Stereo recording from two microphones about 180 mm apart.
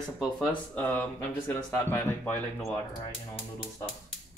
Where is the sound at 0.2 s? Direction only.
5° left (ahead or behind).